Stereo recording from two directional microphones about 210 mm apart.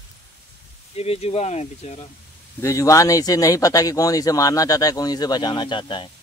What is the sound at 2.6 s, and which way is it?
Speech, 15° left (ahead or behind).